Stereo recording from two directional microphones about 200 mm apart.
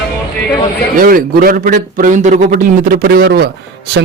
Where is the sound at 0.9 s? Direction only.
45° right (ahead or behind).